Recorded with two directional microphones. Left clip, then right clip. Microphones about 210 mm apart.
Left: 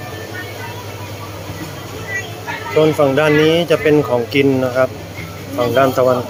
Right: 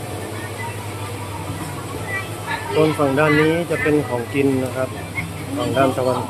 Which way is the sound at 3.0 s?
15° left (ahead or behind).